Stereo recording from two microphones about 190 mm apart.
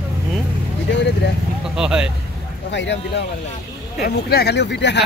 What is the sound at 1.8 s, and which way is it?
Speech, 5° right (ahead or behind).